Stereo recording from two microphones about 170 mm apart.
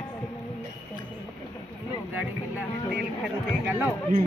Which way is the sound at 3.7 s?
10° right (ahead or behind).